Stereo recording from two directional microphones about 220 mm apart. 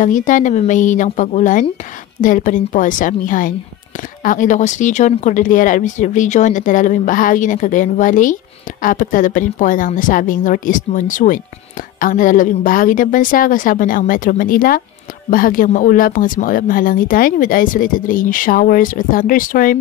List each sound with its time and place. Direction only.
0.0 s speech: 35° left (ahead or behind)